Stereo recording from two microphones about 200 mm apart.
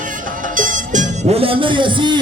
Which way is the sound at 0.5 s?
40° right (ahead or behind).